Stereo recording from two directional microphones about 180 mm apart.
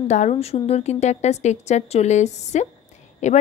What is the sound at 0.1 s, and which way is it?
A woman's voice, 40° left (ahead or behind).